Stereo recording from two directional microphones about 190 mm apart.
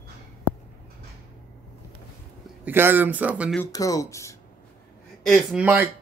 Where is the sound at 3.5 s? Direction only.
15° left (ahead or behind).